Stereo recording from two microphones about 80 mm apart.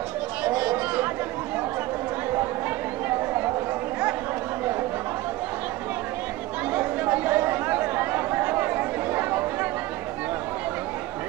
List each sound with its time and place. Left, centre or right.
0.4 s chatter: centre
3.1 s chatter: right
6.7 s chatter: right